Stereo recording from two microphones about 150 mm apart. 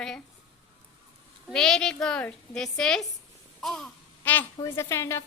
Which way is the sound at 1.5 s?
5° left (ahead or behind).